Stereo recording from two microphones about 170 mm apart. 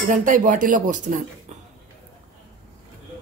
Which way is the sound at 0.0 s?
50° right (ahead or behind).